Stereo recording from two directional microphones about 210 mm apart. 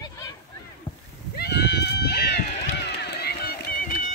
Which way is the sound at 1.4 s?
50° left (ahead or behind).